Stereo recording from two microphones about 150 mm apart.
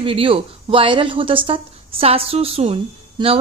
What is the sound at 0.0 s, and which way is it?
A woman's voice, 40° right (ahead or behind).